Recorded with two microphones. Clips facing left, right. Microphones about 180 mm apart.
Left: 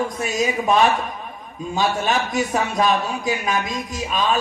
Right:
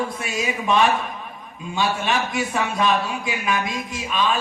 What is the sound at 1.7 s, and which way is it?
A man's voice, 40° left (ahead or behind).